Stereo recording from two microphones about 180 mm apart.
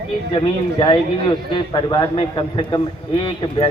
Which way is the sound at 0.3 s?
25° left (ahead or behind).